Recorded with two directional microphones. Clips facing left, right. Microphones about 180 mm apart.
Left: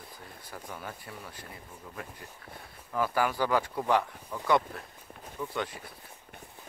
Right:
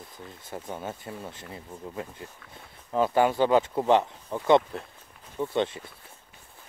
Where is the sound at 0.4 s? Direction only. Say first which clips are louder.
Right 6 dB; 25° right (ahead or behind).